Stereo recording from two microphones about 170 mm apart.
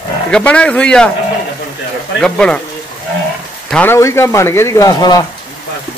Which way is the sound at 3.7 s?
15° left (ahead or behind).